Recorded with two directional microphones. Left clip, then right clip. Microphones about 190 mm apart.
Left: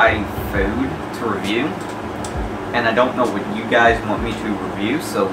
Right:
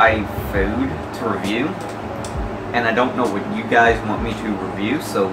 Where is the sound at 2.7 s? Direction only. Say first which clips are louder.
Left 2 dB; centre (ahead or behind).